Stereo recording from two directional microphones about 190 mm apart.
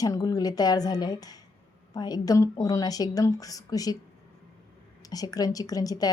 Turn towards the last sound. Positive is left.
turn(degrees=20)  # may be behind; listen again after turning